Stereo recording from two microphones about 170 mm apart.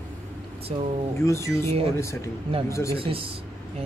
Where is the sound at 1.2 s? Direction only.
20° left (ahead or behind).